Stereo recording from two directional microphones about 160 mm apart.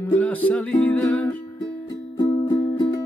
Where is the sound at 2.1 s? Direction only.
20° left (ahead or behind).